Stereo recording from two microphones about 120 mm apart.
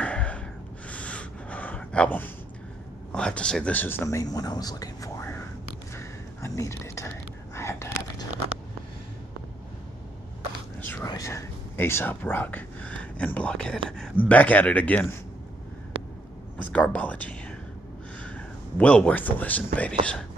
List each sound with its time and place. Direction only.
0.0 s gasp: 10° left (ahead or behind)
3.1 s speech: 10° left (ahead or behind)
5.9 s a sound: 25° left (ahead or behind)
11.0 s whispering: 30° left (ahead or behind); by 13.7 s 10° left (ahead or behind)
13.8 s speech: 5° left (ahead or behind)
16.5 s whispering: 10° left (ahead or behind)
18.2 s a man's voice: 10° left (ahead or behind)